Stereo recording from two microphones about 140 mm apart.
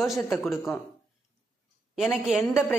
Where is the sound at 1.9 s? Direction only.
Centre (ahead or behind).